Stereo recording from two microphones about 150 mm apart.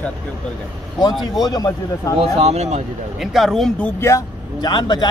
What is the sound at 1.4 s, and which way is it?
Speech, 25° left (ahead or behind).